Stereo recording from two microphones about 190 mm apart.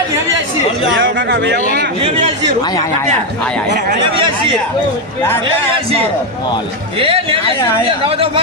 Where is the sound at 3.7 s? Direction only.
45° right (ahead or behind).